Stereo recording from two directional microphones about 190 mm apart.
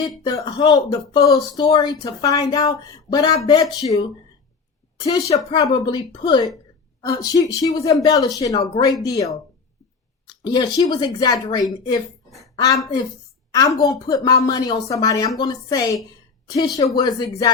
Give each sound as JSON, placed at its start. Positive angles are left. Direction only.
{"t": 0.3, "sound": "speech", "side_deg": 20}
{"t": 10.4, "sound": "speech", "side_deg": 20}
{"t": 12.4, "sound": "a sound", "side_deg": 15}
{"t": 13.5, "sound": "speech", "side_deg": 15}